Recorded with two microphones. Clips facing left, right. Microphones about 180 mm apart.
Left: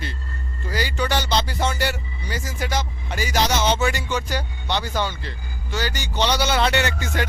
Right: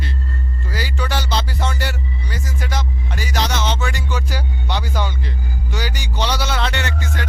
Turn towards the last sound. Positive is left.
turn(degrees=10)  # may be behind; listen again after turning